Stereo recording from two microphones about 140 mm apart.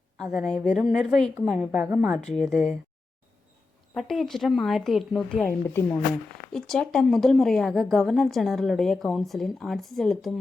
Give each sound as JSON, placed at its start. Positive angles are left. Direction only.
{"t": 0.3, "sound": "a woman's voice", "side_deg": -10}
{"t": 3.9, "sound": "a woman's voice", "side_deg": 0}
{"t": 5.6, "sound": "speech", "side_deg": 15}
{"t": 6.5, "sound": "a woman's voice", "side_deg": 5}